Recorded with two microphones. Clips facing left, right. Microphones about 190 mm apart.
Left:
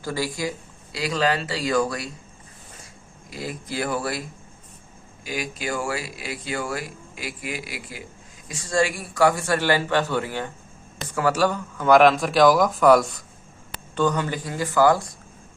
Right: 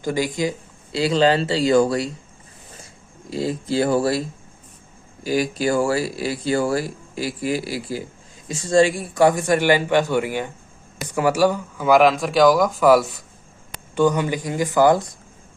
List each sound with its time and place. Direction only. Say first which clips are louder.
0.0 s speech: right 5 dB; 20° right (ahead or behind)
3.2 s a man's voice: right 9 dB; 25° right (ahead or behind)